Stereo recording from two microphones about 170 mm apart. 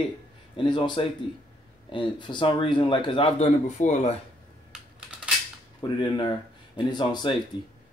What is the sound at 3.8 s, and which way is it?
Speech, 45° left (ahead or behind).